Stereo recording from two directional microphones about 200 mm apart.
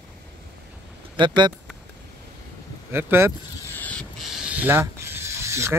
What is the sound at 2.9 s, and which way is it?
Speech, 10° right (ahead or behind).